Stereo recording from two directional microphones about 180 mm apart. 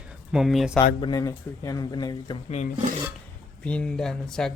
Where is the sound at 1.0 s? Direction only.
20° left (ahead or behind).